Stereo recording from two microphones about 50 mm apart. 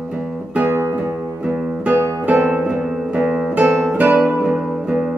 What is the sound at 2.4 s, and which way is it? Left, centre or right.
Music, centre.